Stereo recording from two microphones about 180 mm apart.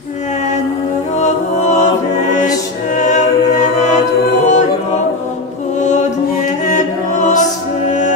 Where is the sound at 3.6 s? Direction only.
40° left (ahead or behind).